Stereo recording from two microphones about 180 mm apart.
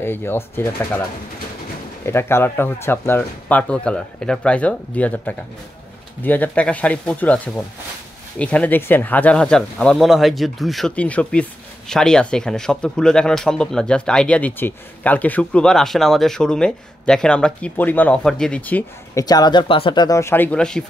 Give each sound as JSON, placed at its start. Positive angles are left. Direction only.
{"t": 0.0, "sound": "speech", "side_deg": 10}
{"t": 2.0, "sound": "speech", "side_deg": 15}
{"t": 19.2, "sound": "speech", "side_deg": 20}